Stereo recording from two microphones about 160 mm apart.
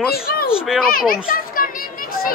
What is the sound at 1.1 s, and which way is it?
Children playing, 60° left (ahead or behind).